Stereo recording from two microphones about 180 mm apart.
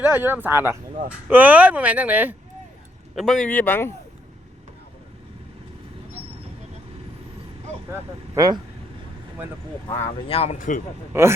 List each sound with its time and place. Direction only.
0.0 s speech: 10° right (ahead or behind)
3.2 s speech: centre (ahead or behind)
8.4 s speech: 20° right (ahead or behind)
9.9 s speech: 35° left (ahead or behind)
11.1 s speech: 15° right (ahead or behind)